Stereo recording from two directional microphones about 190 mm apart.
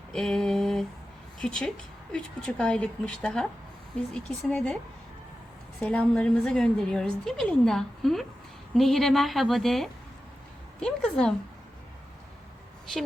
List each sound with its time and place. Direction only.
0.1 s a sound: centre (ahead or behind)
1.4 s a woman's voice: 5° left (ahead or behind)
5.8 s a woman's voice: 5° left (ahead or behind)